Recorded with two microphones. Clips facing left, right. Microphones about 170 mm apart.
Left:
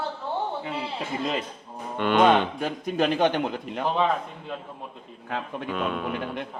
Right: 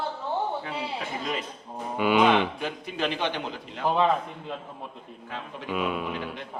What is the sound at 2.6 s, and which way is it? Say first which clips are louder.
A man's voice: left 5 dB; 45° left (ahead or behind).